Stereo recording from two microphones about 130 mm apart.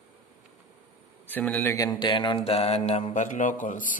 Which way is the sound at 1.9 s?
40° left (ahead or behind).